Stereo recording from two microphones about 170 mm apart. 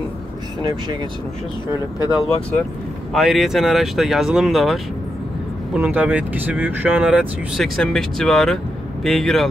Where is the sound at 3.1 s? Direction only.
Centre (ahead or behind).